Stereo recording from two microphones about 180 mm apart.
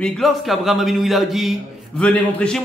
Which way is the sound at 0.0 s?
Centre (ahead or behind).